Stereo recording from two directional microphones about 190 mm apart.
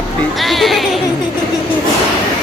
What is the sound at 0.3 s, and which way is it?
Music, centre (ahead or behind).